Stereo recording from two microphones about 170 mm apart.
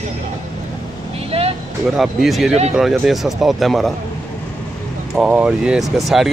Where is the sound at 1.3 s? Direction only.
35° right (ahead or behind).